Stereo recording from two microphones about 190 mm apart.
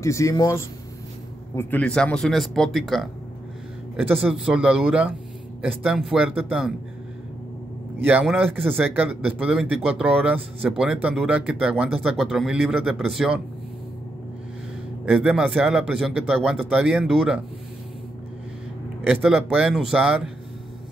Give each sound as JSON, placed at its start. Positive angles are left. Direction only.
{"t": 0.0, "sound": "speech", "side_deg": 15}
{"t": 8.0, "sound": "speech", "side_deg": -10}
{"t": 15.0, "sound": "speech", "side_deg": -5}
{"t": 19.0, "sound": "speech", "side_deg": -5}